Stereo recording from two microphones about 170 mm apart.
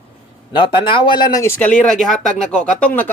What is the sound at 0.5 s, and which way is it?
Speech, 30° left (ahead or behind).